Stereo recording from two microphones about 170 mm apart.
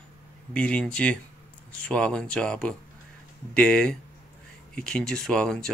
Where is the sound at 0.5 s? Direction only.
5° left (ahead or behind).